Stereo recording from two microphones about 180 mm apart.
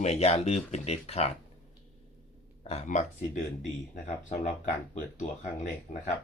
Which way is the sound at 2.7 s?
40° left (ahead or behind).